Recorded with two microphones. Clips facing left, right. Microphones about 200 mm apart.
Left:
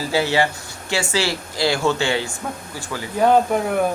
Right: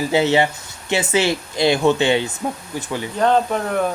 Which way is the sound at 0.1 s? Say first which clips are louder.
Right 2 dB; 20° right (ahead or behind).